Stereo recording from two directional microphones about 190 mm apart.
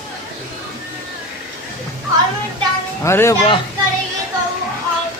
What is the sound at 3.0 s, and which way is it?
Speech, 15° left (ahead or behind).